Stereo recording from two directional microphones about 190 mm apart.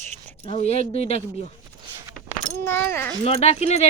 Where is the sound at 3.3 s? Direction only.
30° left (ahead or behind).